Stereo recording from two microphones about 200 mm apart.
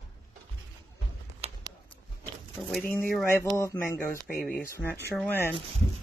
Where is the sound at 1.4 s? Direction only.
30° right (ahead or behind).